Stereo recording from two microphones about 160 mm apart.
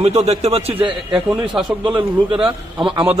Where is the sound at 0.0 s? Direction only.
40° right (ahead or behind).